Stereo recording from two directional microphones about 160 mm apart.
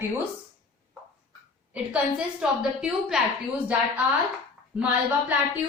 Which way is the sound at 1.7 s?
5° right (ahead or behind).